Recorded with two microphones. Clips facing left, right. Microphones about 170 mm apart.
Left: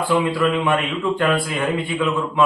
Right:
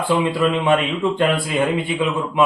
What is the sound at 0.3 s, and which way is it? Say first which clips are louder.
A man's voice: right 2 dB; 25° right (ahead or behind).